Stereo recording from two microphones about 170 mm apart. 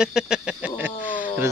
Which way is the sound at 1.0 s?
50° left (ahead or behind).